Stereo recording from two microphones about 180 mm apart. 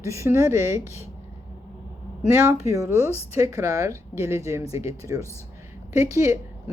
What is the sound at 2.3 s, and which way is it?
A woman's voice, 15° right (ahead or behind).